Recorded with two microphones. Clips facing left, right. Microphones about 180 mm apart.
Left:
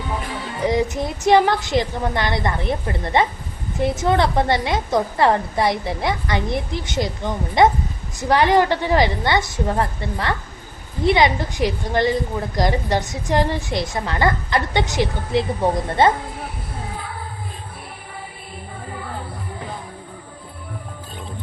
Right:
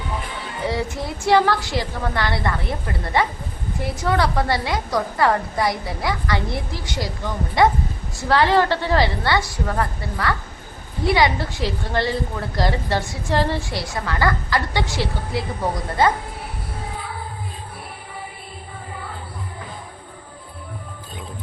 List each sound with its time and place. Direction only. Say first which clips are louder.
0.6 s a woman's voice: left 5 dB; 20° left (ahead or behind)